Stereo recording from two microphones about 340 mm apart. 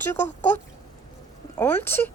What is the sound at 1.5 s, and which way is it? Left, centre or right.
Speech, centre.